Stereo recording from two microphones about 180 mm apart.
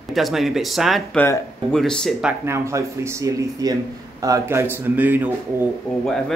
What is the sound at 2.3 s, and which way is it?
Speech, 15° right (ahead or behind).